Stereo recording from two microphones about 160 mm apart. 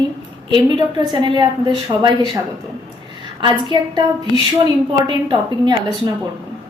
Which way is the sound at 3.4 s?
30° right (ahead or behind).